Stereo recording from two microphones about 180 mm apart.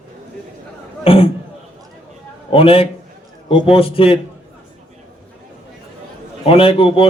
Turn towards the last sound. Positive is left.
turn(degrees=30)  # may be behind; listen again after turning